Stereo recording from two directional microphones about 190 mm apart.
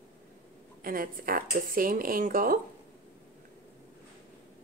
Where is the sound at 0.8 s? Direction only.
50° right (ahead or behind).